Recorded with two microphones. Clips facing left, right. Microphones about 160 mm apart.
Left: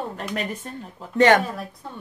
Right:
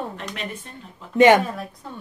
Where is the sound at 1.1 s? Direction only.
15° right (ahead or behind).